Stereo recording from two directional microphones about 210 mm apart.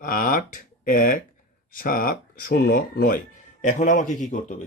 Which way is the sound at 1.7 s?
45° left (ahead or behind).